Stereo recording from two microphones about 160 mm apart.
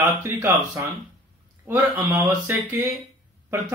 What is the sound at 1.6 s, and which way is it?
Speech, 15° right (ahead or behind).